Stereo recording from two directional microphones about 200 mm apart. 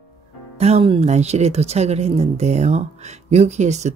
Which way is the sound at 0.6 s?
30° right (ahead or behind).